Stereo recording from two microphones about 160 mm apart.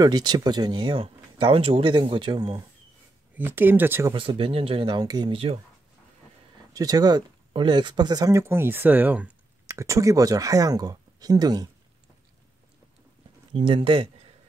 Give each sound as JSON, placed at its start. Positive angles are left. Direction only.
{"t": 0.0, "sound": "speech", "side_deg": -25}
{"t": 3.3, "sound": "speech", "side_deg": -10}
{"t": 4.1, "sound": "speech", "side_deg": -30}
{"t": 6.7, "sound": "speech", "side_deg": -20}
{"t": 13.5, "sound": "speech", "side_deg": -35}